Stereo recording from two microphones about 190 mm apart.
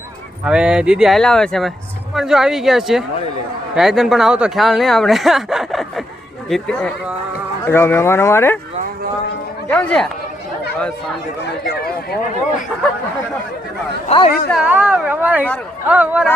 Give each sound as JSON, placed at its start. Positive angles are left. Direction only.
{"t": 0.4, "sound": "speech", "side_deg": -5}
{"t": 9.6, "sound": "speech", "side_deg": 5}
{"t": 14.1, "sound": "a woman's voice", "side_deg": 35}
{"t": 14.5, "sound": "a woman's voice", "side_deg": -5}